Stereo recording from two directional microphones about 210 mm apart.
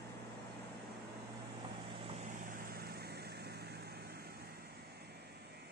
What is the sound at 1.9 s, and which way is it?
Vehicle, 35° right (ahead or behind).